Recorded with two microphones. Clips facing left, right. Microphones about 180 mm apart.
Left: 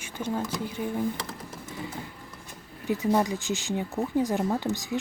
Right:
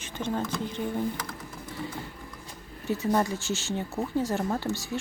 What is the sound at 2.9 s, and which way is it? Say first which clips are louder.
Speech: left 1 dB; 15° left (ahead or behind).